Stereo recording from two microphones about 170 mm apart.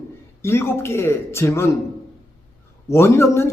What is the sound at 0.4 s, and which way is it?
Speech, 15° left (ahead or behind).